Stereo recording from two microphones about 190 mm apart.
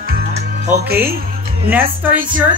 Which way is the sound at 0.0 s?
55° right (ahead or behind).